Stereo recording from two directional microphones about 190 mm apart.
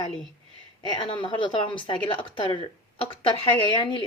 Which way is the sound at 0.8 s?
25° left (ahead or behind).